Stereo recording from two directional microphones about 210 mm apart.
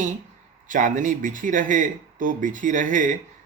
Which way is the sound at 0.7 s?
40° right (ahead or behind).